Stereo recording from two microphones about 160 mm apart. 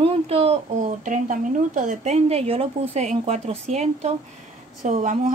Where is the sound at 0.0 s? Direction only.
40° right (ahead or behind).